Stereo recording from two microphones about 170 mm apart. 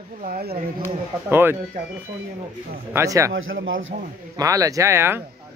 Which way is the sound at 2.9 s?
15° right (ahead or behind).